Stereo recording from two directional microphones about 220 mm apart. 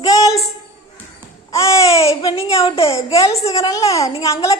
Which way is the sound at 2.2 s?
20° left (ahead or behind).